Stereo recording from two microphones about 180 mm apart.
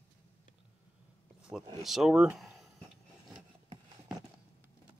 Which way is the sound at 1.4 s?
5° right (ahead or behind).